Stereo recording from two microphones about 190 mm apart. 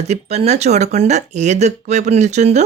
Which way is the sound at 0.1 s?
35° right (ahead or behind).